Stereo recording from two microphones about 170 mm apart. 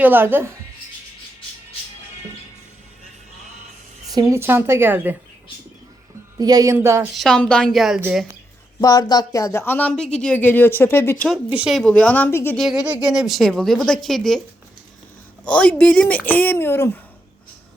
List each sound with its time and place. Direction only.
0.0 s speech: 10° right (ahead or behind)
4.1 s speech: 20° right (ahead or behind)
6.3 s speech: 20° right (ahead or behind)
7.2 s a woman's voice: 5° left (ahead or behind)
8.8 s speech: 20° left (ahead or behind)
11.4 s speech: 5° right (ahead or behind); by 12.5 s 15° left (ahead or behind)
12.5 s a woman's voice: centre (ahead or behind)
15.4 s speech: 5° left (ahead or behind)